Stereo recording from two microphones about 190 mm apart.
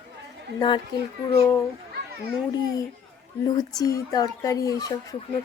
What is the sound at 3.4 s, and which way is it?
A woman's voice, 20° left (ahead or behind).